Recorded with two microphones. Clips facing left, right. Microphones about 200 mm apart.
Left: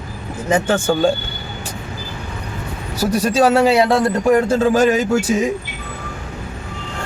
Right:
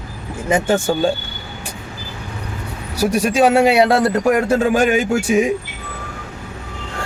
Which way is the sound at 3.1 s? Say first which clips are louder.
Even; 15° right (ahead or behind).